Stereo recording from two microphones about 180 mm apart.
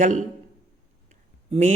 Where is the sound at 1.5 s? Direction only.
35° right (ahead or behind).